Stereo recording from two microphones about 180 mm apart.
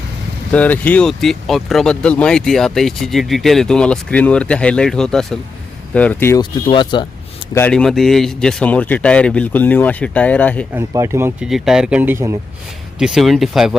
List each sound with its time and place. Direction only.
0.5 s speech: 10° left (ahead or behind)
6.4 s speech: 25° left (ahead or behind)
7.5 s speech: 10° left (ahead or behind)
10.8 s speech: 15° right (ahead or behind)
11.4 s speech: centre (ahead or behind)
13.0 s speech: centre (ahead or behind)